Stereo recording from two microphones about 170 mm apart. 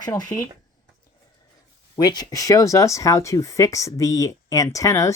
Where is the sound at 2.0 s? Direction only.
25° left (ahead or behind).